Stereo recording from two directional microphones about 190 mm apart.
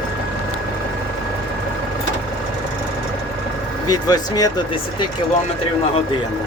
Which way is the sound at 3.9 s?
20° left (ahead or behind).